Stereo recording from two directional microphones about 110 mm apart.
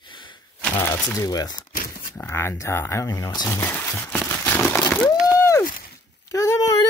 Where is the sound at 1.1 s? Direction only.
30° left (ahead or behind).